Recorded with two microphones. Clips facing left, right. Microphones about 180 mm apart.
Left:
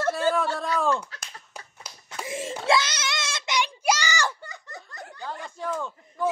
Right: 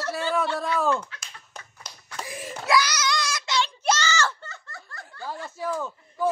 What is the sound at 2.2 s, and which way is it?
Child singing, 25° left (ahead or behind).